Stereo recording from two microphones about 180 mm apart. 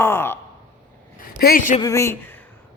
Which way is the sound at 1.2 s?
55° left (ahead or behind).